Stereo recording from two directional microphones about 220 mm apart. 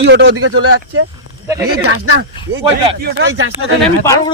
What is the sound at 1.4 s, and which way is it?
Speech, 15° right (ahead or behind).